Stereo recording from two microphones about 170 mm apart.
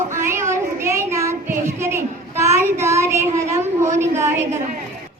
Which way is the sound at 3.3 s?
15° right (ahead or behind).